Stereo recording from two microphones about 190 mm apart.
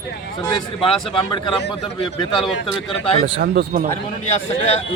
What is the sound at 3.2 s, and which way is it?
Speech, 70° right (ahead or behind).